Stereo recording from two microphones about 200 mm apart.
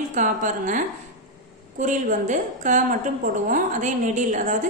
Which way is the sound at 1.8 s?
40° right (ahead or behind).